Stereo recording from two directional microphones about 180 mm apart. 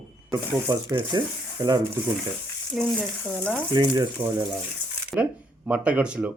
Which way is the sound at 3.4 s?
15° right (ahead or behind).